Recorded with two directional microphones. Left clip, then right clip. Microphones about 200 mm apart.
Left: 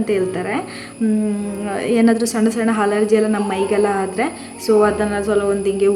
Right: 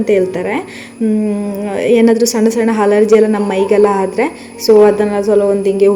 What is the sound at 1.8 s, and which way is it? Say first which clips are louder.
A woman's voice: right 7 dB; 10° right (ahead or behind).